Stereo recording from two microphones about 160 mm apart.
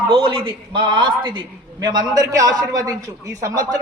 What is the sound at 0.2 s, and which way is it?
A man's voice, 30° right (ahead or behind).